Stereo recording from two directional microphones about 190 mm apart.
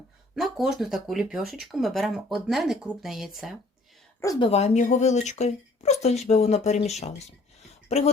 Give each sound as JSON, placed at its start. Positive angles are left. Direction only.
{"t": 0.3, "sound": "speech", "side_deg": 0}
{"t": 4.2, "sound": "a woman's voice", "side_deg": 15}
{"t": 4.5, "sound": "speech", "side_deg": 35}